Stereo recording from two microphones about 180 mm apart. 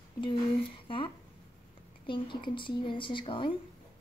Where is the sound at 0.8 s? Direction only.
30° left (ahead or behind).